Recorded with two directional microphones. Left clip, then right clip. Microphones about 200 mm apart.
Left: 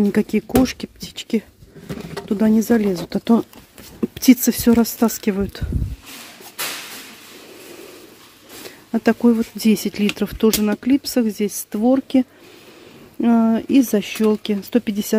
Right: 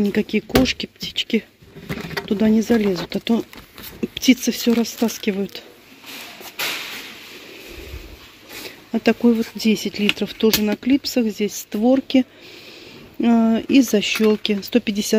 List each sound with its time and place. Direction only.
0.0 s speech: 20° left (ahead or behind)
8.6 s speech: 15° left (ahead or behind)